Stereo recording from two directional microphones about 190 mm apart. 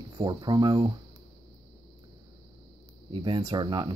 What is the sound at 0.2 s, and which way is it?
Speech, 20° right (ahead or behind).